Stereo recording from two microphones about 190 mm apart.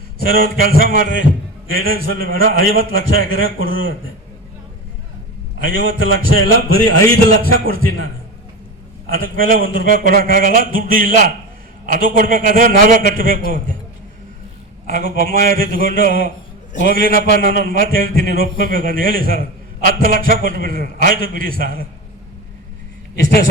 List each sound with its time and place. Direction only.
0.2 s a man's voice: 50° right (ahead or behind)
5.5 s a man's voice: 50° right (ahead or behind)
9.0 s a man's voice: 50° right (ahead or behind)
14.8 s a man's voice: 45° right (ahead or behind)